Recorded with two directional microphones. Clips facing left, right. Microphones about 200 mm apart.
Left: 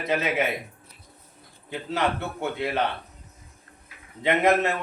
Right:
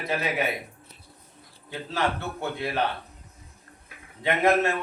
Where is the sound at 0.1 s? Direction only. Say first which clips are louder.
Left 3 dB; 20° left (ahead or behind).